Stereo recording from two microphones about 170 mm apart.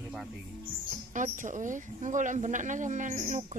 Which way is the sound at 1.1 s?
50° right (ahead or behind).